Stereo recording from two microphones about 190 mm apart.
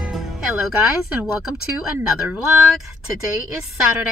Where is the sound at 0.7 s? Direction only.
5° right (ahead or behind).